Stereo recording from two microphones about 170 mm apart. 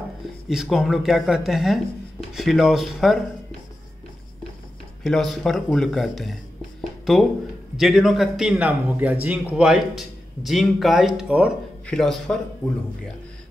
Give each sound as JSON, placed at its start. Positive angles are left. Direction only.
{"t": 0.5, "sound": "speech", "side_deg": -5}
{"t": 5.0, "sound": "speech", "side_deg": 0}